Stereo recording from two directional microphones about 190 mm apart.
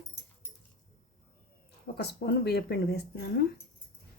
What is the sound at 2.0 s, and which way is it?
Speech, 60° left (ahead or behind).